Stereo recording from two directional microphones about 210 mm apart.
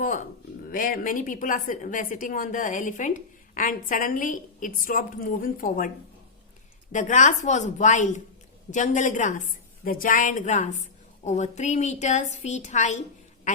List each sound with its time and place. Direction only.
0.7 s a woman's voice: 40° left (ahead or behind)
6.9 s a woman's voice: 35° left (ahead or behind)